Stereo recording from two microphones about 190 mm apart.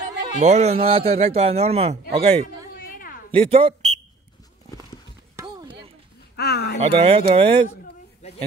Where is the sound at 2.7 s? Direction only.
50° left (ahead or behind).